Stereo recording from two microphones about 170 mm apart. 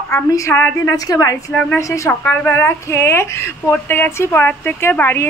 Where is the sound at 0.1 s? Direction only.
15° left (ahead or behind).